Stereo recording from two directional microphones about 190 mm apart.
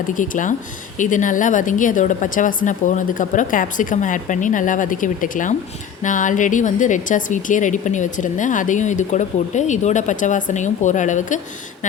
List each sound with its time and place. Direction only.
0.1 s a woman's voice: 45° left (ahead or behind)